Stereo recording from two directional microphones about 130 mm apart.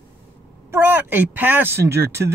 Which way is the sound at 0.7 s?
15° right (ahead or behind).